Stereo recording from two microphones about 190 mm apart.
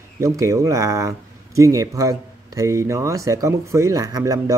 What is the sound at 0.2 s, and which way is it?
Speech, 15° right (ahead or behind).